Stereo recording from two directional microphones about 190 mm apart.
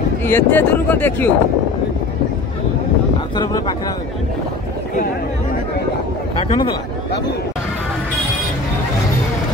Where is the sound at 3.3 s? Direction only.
20° left (ahead or behind).